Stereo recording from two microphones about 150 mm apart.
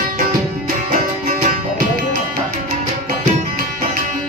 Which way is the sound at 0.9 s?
65° right (ahead or behind).